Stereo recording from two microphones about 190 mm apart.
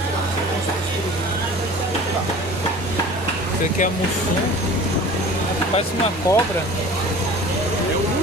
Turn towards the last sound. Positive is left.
turn(degrees=15)  # may be behind; listen again after turning